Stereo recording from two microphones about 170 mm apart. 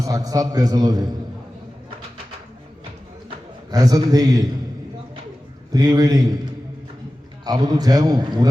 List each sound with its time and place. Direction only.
0.0 s a man's voice: 20° right (ahead or behind)
3.2 s a sound: 20° right (ahead or behind)
5.7 s a man's voice: 20° right (ahead or behind)
7.4 s a man's voice: 25° right (ahead or behind)